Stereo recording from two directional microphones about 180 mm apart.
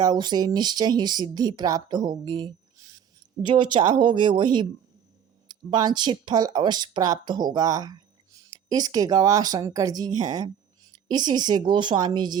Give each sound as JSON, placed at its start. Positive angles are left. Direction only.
{"t": 0.0, "sound": "speech", "side_deg": -25}